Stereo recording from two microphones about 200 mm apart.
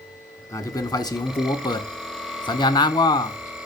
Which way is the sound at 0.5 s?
20° left (ahead or behind).